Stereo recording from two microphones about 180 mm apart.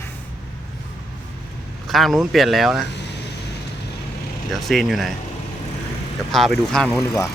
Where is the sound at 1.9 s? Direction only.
Centre (ahead or behind).